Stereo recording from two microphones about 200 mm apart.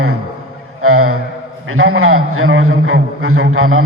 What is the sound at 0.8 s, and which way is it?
Mantra, 90° right.